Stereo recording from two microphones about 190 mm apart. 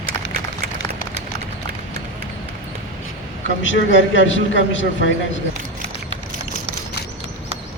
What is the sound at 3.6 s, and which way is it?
A man's voice, 80° left.